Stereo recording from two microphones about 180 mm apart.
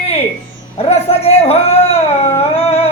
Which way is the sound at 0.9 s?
35° left (ahead or behind).